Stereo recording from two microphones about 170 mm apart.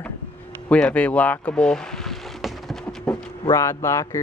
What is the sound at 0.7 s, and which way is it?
Vehicle, 5° left (ahead or behind).